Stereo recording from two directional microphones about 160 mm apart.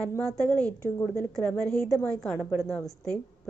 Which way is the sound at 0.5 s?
10° left (ahead or behind).